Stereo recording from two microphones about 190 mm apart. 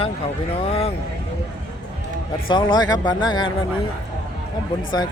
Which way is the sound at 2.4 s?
25° left (ahead or behind).